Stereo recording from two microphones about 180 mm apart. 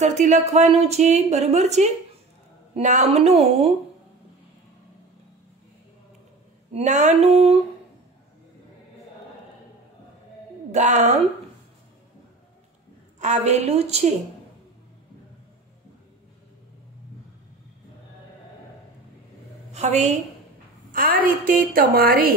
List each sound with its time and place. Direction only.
0.0 s a woman's voice: 40° right (ahead or behind)
6.7 s a woman's voice: 40° right (ahead or behind)
10.7 s a woman's voice: 40° right (ahead or behind)
13.2 s a woman's voice: 40° right (ahead or behind)
19.7 s a woman's voice: 40° right (ahead or behind)
20.9 s a woman's voice: 50° right (ahead or behind)